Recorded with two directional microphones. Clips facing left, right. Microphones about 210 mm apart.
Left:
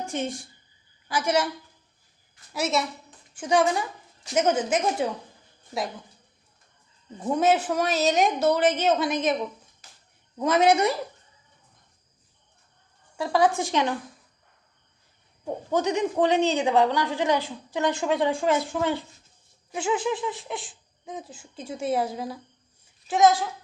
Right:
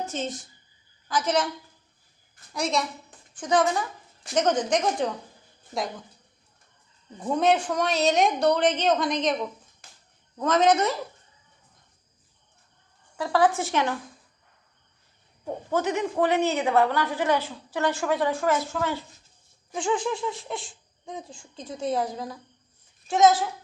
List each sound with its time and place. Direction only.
0.0 s a woman's voice: 15° left (ahead or behind)
2.5 s a woman's voice: 5° left (ahead or behind)
7.2 s speech: 5° left (ahead or behind)
10.3 s a woman's voice: 10° left (ahead or behind)
13.1 s a woman's voice: 20° left (ahead or behind)
15.7 s a woman's voice: 15° left (ahead or behind)
19.7 s speech: 5° left (ahead or behind)